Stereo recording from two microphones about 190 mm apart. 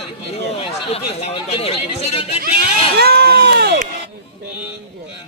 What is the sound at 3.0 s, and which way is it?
Speech, 55° right (ahead or behind).